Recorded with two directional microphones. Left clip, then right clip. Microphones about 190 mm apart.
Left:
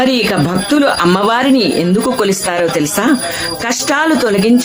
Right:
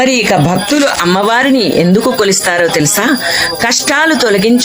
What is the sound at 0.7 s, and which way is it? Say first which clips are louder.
Speech: left 2 dB; 20° right (ahead or behind).